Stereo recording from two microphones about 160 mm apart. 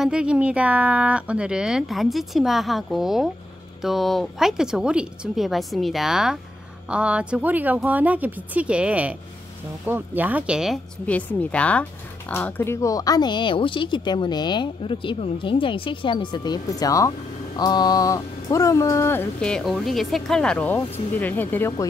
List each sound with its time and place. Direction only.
0.0 s speech: 5° right (ahead or behind)
11.1 s speech: 10° left (ahead or behind)